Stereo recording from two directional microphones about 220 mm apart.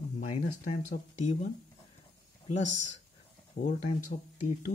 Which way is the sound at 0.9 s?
30° left (ahead or behind).